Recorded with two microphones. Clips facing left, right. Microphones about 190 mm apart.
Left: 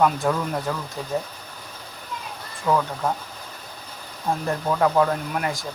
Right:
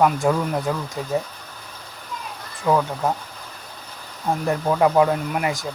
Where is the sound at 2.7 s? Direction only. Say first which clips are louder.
Right 2 dB; 20° right (ahead or behind).